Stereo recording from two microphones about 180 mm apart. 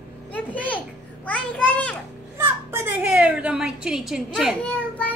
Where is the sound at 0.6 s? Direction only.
10° left (ahead or behind).